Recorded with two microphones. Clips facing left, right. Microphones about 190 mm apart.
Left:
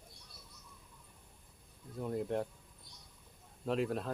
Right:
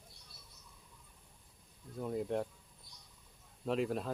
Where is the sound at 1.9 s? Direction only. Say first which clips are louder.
Even; centre (ahead or behind).